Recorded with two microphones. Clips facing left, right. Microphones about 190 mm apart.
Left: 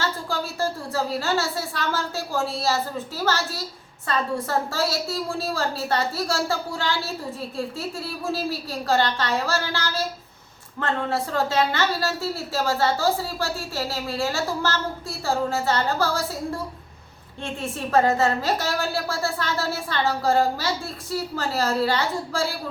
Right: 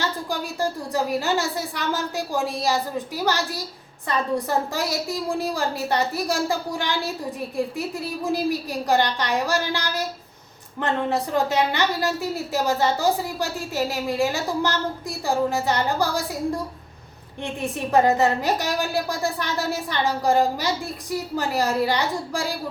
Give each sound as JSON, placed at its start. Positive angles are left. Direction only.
{"t": 0.0, "sound": "a woman's voice", "side_deg": -15}